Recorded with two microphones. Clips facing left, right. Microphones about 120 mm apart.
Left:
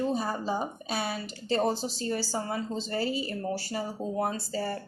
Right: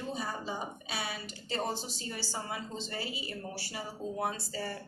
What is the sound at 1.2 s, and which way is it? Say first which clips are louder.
Speech: left 10 dB; 35° left (ahead or behind).